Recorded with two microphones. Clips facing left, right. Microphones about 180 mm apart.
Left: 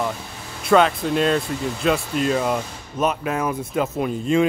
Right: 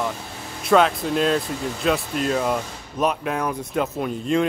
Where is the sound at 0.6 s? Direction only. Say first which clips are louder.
Left 1 dB; centre (ahead or behind).